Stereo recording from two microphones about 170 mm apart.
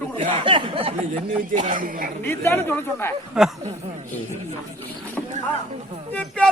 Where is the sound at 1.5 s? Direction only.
50° right (ahead or behind).